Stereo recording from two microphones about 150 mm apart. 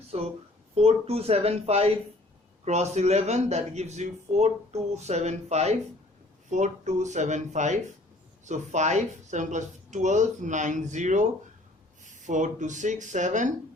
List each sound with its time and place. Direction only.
0.1 s a man's voice: 45° right (ahead or behind)